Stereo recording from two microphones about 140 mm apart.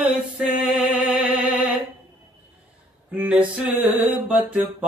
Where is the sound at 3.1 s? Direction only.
10° right (ahead or behind).